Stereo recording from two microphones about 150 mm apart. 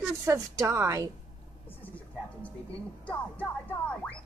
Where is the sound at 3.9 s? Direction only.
10° left (ahead or behind).